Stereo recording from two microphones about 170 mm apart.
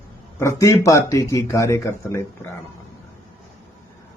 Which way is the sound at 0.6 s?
20° left (ahead or behind).